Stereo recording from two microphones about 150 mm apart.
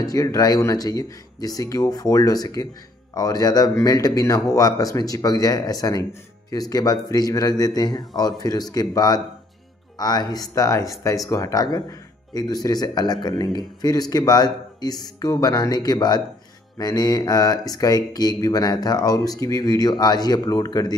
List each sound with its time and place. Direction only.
0.0 s mantra: 25° left (ahead or behind)